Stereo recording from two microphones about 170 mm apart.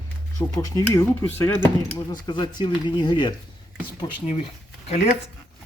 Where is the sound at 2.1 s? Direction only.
25° left (ahead or behind).